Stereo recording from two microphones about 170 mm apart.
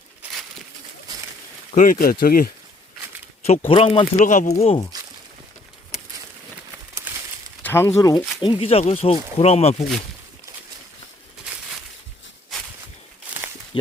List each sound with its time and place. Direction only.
1.7 s speech: 50° left (ahead or behind)
3.7 s speech: 35° left (ahead or behind)
6.9 s crumpling: 15° right (ahead or behind)
7.6 s speech: 15° left (ahead or behind)
8.4 s speech: 30° left (ahead or behind)